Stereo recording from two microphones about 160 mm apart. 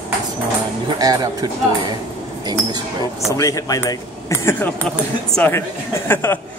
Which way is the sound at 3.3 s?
20° left (ahead or behind).